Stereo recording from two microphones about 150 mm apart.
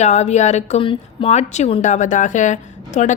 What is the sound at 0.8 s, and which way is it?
Speech, 35° left (ahead or behind).